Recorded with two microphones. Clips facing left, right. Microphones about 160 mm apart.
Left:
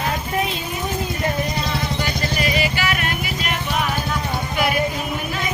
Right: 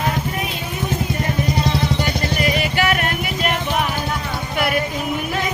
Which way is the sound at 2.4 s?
55° right (ahead or behind).